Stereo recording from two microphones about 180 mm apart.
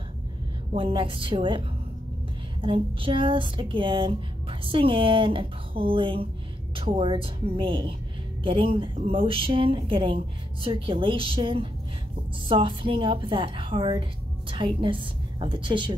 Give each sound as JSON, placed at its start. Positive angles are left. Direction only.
{"t": 0.7, "sound": "speech", "side_deg": -30}
{"t": 2.6, "sound": "speech", "side_deg": -30}